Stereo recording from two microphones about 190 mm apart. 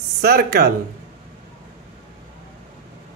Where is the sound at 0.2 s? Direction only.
55° right (ahead or behind).